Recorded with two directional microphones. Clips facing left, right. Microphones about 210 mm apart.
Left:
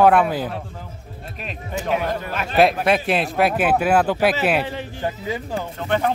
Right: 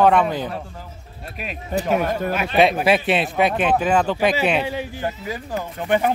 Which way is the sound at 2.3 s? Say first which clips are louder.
Left 1 dB; 5° right (ahead or behind).